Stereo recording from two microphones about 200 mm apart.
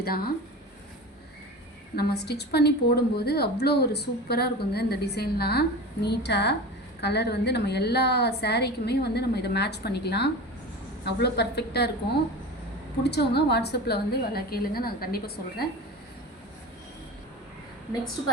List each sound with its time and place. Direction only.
0.0 s a woman's voice: 50° left (ahead or behind)
2.0 s a woman's voice: 55° left (ahead or behind)
13.0 s a woman's voice: 55° left (ahead or behind)